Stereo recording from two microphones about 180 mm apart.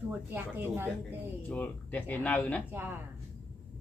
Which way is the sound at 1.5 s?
10° left (ahead or behind).